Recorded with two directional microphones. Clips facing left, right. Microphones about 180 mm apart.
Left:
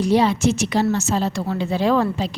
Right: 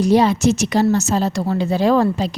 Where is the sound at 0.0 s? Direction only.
45° right (ahead or behind).